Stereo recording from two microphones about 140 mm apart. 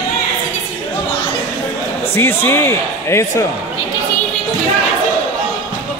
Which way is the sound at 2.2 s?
15° left (ahead or behind).